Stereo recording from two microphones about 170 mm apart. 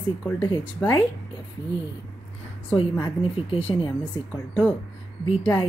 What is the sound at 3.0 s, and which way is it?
Speech, 30° left (ahead or behind).